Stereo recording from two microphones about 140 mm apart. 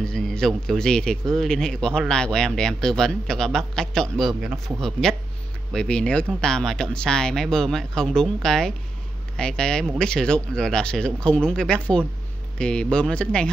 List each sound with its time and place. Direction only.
0.0 s a man's voice: 5° left (ahead or behind)